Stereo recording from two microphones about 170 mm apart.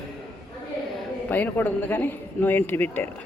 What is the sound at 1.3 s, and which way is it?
A man's voice, 10° left (ahead or behind).